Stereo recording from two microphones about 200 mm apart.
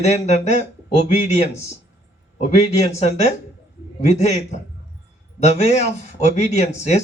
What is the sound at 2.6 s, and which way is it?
Speech, 30° left (ahead or behind).